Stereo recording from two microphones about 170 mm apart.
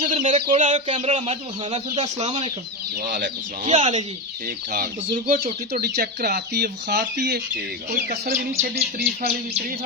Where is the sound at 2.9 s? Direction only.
65° right (ahead or behind).